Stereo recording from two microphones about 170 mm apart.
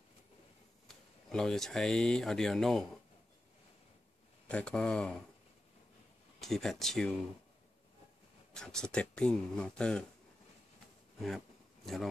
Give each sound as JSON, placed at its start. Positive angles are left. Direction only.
{"t": 0.8, "sound": "speech", "side_deg": 0}
{"t": 4.5, "sound": "speech", "side_deg": 5}
{"t": 6.4, "sound": "speech", "side_deg": 0}
{"t": 8.5, "sound": "speech", "side_deg": 5}
{"t": 11.1, "sound": "a sound", "side_deg": 0}